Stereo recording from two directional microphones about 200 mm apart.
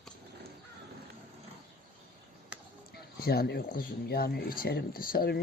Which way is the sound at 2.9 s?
50° left (ahead or behind).